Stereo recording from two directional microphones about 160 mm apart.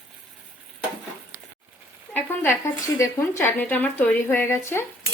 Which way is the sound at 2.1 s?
15° left (ahead or behind).